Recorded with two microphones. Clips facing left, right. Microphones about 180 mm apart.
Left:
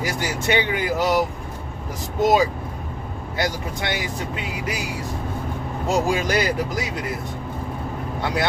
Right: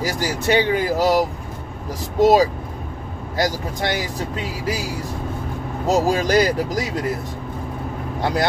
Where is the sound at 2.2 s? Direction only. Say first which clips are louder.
Right 4 dB; 35° right (ahead or behind).